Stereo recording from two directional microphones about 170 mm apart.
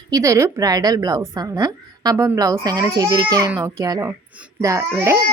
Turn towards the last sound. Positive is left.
turn(degrees=-15)  # may be behind; listen again after turning